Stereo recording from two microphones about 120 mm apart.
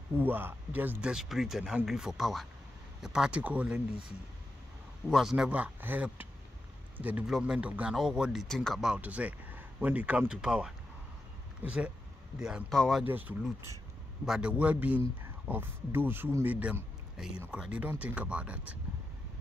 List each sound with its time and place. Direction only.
0.2 s speech: 15° right (ahead or behind)
1.1 s speech: 5° right (ahead or behind)
5.0 s speech: 5° right (ahead or behind)
8.9 s speech: 10° right (ahead or behind); by 13.0 s 5° left (ahead or behind)
13.0 s speech: 15° right (ahead or behind)